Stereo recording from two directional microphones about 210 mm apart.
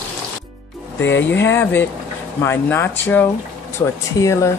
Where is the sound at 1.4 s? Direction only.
10° left (ahead or behind).